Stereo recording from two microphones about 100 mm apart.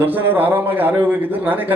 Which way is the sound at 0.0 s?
20° right (ahead or behind).